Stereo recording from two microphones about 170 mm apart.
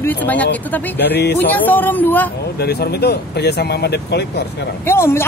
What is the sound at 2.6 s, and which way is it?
Speech, 70° left (ahead or behind).